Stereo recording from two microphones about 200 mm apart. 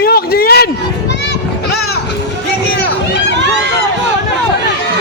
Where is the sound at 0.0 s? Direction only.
50° left (ahead or behind).